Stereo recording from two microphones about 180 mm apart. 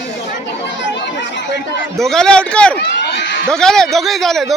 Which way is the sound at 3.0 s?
75° left (ahead or behind).